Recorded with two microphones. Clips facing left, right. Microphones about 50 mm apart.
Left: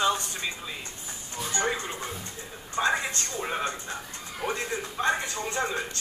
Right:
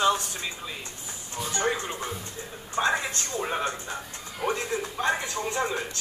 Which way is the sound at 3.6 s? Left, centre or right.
Right.